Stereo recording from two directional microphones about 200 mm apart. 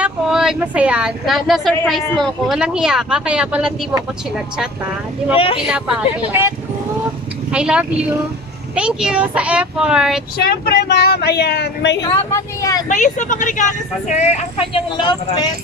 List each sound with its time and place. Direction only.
0.0 s speech: 5° right (ahead or behind)
5.3 s a woman's voice: 25° left (ahead or behind)
5.7 s a woman's voice: 5° right (ahead or behind)
7.5 s speech: 5° right (ahead or behind)
10.3 s speech: 50° left (ahead or behind)
12.0 s speech: 15° left (ahead or behind)
12.8 s speech: 40° left (ahead or behind); by 15.5 s 20° left (ahead or behind)